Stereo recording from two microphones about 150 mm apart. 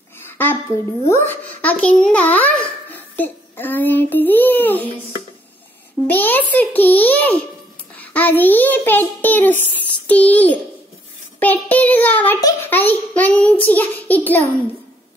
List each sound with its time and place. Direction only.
0.3 s a sound: 15° left (ahead or behind)
1.0 s a child's voice: 15° left (ahead or behind)
6.0 s a child's voice: 10° left (ahead or behind)
12.4 s a child's voice: 25° left (ahead or behind)
12.7 s a child's voice: 10° left (ahead or behind)